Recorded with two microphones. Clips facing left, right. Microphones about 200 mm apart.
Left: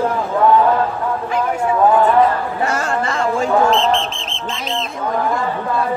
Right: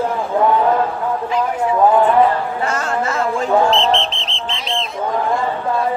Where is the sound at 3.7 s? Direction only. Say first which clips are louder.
Even; 45° left (ahead or behind).